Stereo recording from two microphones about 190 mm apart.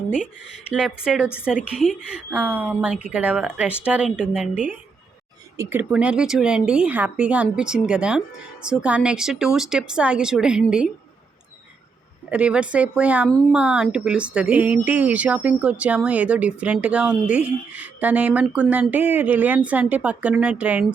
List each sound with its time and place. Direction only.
0.7 s a woman's voice: 5° right (ahead or behind)
12.3 s speech: 5° right (ahead or behind)